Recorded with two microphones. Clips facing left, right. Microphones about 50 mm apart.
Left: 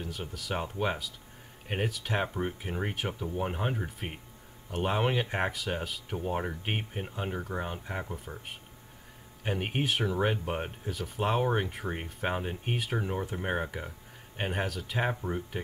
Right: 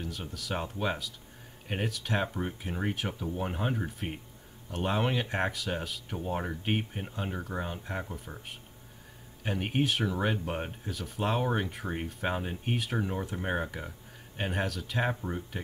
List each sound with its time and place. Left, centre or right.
0.0 s speech: centre